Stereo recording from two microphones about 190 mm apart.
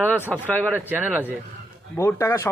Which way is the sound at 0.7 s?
10° right (ahead or behind).